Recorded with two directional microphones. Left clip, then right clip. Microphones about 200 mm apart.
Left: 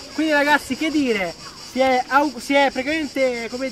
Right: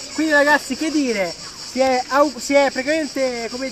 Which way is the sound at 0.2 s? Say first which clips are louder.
Right 2 dB; 15° left (ahead or behind).